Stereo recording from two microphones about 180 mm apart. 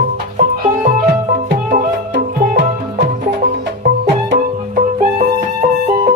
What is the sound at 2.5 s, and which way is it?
Music, 70° right (ahead or behind).